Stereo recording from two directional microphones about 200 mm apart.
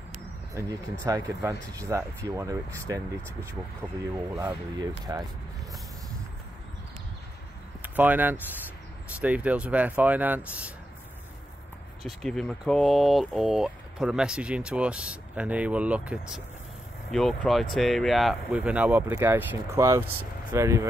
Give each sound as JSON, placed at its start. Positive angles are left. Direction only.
{"t": 0.6, "sound": "speech", "side_deg": -15}
{"t": 5.1, "sound": "speech", "side_deg": -15}
{"t": 7.8, "sound": "speech", "side_deg": -10}
{"t": 12.0, "sound": "speech", "side_deg": 0}